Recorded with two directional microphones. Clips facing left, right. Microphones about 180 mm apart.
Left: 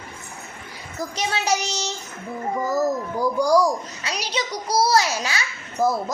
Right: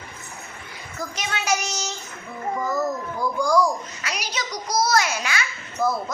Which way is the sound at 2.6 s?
35° left (ahead or behind).